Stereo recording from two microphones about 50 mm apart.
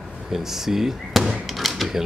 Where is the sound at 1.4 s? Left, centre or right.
Centre.